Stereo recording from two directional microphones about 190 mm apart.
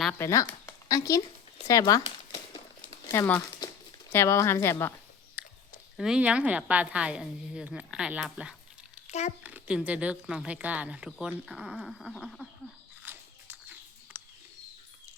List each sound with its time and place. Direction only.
0.0 s speech: 10° left (ahead or behind)
1.6 s a sound: 20° left (ahead or behind)
3.1 s speech: 10° left (ahead or behind)
3.6 s crumpling: 20° left (ahead or behind)
4.1 s speech: 15° left (ahead or behind)
5.4 s speech: 5° right (ahead or behind)
9.0 s a sound: 35° left (ahead or behind)
9.4 s speech: 10° right (ahead or behind)
13.1 s biting: 10° right (ahead or behind)
14.1 s bird: 10° right (ahead or behind)